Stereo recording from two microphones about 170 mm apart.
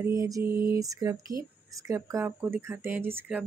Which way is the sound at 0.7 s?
20° right (ahead or behind).